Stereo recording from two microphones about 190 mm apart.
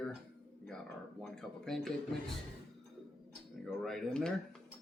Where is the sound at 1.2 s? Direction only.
Centre (ahead or behind).